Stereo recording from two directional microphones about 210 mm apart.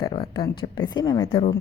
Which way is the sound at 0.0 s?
20° left (ahead or behind).